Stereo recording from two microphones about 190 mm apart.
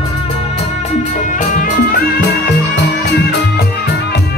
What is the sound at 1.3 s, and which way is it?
Music, 45° left (ahead or behind).